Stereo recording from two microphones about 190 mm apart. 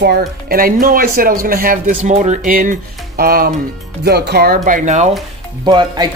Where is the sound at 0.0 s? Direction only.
55° right (ahead or behind); by 5.1 s 40° right (ahead or behind).